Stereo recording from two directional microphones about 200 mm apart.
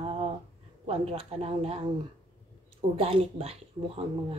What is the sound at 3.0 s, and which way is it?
Speech, 30° right (ahead or behind).